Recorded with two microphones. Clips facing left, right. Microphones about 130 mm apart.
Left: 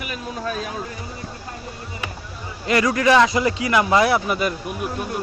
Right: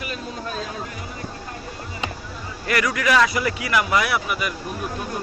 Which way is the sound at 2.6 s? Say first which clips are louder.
Left 4 dB; 25° left (ahead or behind).